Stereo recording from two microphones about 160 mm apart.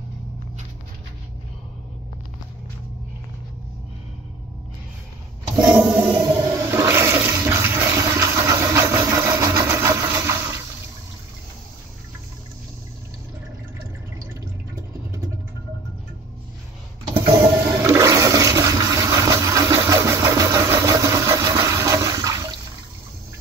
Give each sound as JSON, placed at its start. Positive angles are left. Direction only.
{"t": 5.8, "sound": "toilet flush", "side_deg": -10}
{"t": 17.1, "sound": "toilet flush", "side_deg": -15}